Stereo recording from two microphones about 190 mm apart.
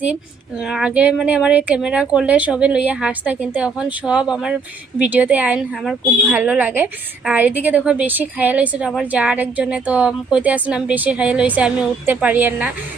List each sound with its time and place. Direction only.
0.6 s a woman's voice: 5° right (ahead or behind)